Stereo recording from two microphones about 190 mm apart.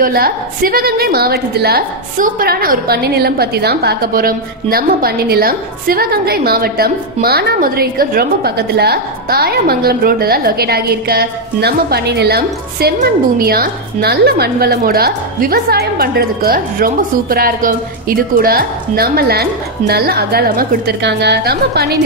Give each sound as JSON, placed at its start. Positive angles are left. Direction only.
{"t": 0.0, "sound": "a woman's voice", "side_deg": -50}